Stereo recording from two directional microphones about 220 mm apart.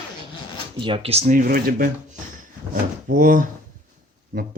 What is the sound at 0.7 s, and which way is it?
Speech, 25° right (ahead or behind).